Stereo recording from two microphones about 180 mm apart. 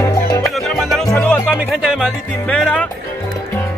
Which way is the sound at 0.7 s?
Centre (ahead or behind).